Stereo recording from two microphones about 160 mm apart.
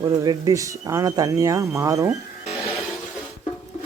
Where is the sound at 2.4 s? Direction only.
40° left (ahead or behind).